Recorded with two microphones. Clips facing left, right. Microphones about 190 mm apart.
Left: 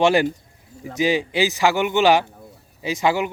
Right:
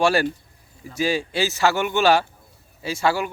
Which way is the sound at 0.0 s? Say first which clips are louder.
Left 3 dB; 20° left (ahead or behind).